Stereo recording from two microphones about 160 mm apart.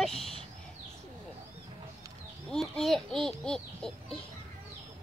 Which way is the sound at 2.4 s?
5° left (ahead or behind).